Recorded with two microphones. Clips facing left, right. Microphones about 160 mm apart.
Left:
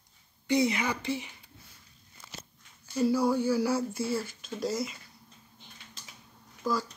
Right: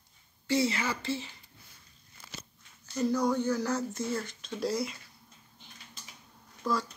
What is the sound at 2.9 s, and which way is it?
Speech, 10° left (ahead or behind).